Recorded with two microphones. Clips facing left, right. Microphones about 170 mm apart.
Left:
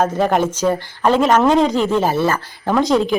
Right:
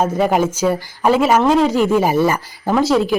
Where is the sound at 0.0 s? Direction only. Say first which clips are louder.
Right 1 dB; 10° right (ahead or behind).